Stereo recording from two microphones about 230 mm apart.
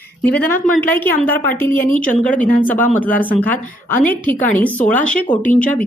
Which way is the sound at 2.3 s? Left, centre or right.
Left.